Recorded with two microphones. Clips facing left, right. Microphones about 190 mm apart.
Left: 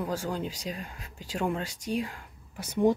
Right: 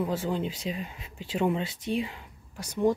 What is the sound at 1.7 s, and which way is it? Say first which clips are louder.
Speech: right 2 dB; 45° left (ahead or behind).